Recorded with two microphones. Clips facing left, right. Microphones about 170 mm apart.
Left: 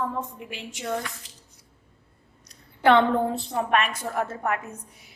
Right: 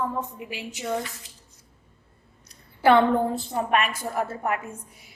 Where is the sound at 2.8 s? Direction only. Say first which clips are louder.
Right 1 dB; 5° right (ahead or behind).